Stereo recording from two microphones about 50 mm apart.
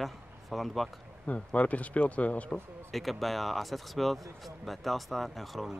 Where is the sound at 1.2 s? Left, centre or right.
Left.